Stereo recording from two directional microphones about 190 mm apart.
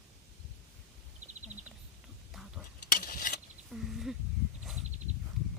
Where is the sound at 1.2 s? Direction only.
35° right (ahead or behind).